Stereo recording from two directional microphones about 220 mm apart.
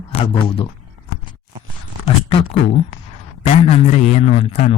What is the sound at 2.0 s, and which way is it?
A man's voice, 25° left (ahead or behind).